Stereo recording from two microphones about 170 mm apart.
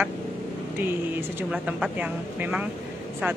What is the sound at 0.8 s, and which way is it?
Speech, 10° right (ahead or behind).